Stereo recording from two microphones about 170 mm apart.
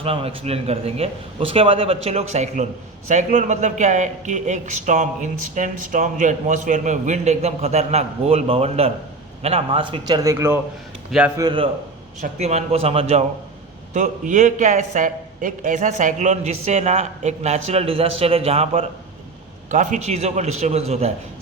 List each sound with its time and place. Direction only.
0.0 s a man's voice: 35° right (ahead or behind); by 10.6 s 15° right (ahead or behind)
11.3 s a man's voice: 25° right (ahead or behind)
12.4 s a man's voice: 40° right (ahead or behind)
13.9 s a man's voice: 50° right (ahead or behind)
19.7 s a man's voice: 45° right (ahead or behind)